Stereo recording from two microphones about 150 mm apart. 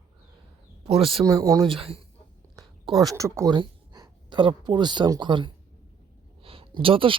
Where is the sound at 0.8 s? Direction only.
35° right (ahead or behind).